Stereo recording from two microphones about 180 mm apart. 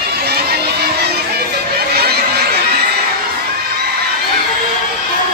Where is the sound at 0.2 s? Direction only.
60° right (ahead or behind).